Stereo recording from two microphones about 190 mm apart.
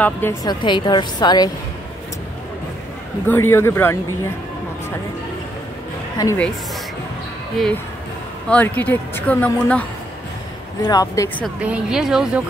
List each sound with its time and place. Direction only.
0.0 s a woman's voice: 10° left (ahead or behind)
3.3 s speech: 10° left (ahead or behind)
6.1 s speech: 15° left (ahead or behind)
8.5 s speech: 10° left (ahead or behind)
10.8 s a woman's voice: 20° left (ahead or behind)
11.6 s speech: 5° right (ahead or behind)